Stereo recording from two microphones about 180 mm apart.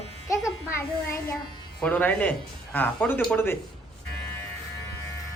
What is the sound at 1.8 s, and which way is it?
Speech, 10° left (ahead or behind).